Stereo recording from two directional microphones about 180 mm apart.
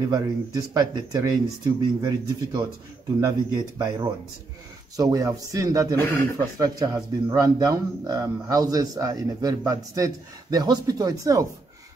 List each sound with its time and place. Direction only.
0.1 s a man's voice: 20° right (ahead or behind)
5.9 s speech: 10° left (ahead or behind)
6.3 s a man's voice: 20° right (ahead or behind)